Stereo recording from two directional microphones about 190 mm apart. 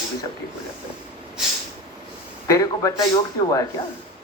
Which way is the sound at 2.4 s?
20° left (ahead or behind).